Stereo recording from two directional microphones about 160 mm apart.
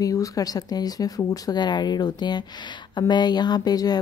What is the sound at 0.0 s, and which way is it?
Speech, 20° left (ahead or behind).